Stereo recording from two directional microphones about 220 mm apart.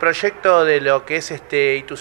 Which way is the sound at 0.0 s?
20° right (ahead or behind).